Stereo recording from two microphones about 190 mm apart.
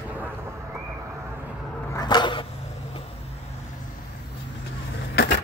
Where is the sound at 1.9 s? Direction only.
20° left (ahead or behind).